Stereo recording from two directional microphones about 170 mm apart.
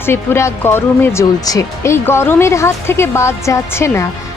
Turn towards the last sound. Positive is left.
turn(degrees=15)  # may be behind; listen again after turning